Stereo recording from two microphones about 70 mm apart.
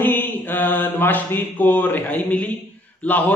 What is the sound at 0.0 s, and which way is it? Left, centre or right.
Mantra, left.